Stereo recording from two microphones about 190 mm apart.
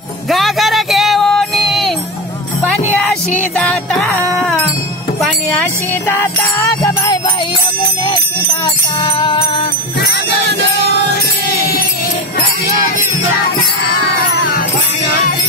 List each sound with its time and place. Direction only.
0.3 s music: centre (ahead or behind)
3.0 s music: centre (ahead or behind)
6.0 s music: 10° left (ahead or behind)
8.6 s jingle bell: 25° left (ahead or behind)